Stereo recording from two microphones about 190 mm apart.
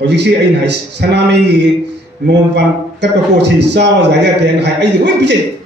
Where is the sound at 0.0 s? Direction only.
65° right (ahead or behind).